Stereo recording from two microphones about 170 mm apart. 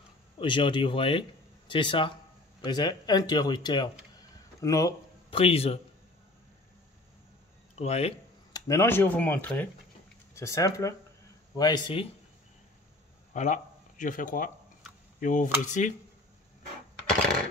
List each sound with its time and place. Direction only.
0.4 s speech: 30° left (ahead or behind)
4.1 s a sound: 20° left (ahead or behind)
5.3 s speech: 35° left (ahead or behind)
7.8 s speech: 40° left (ahead or behind)
8.5 s speech: 15° left (ahead or behind)
13.3 s speech: 45° left (ahead or behind)
15.1 s dishes: 50° left (ahead or behind)
15.6 s speech: 45° left (ahead or behind)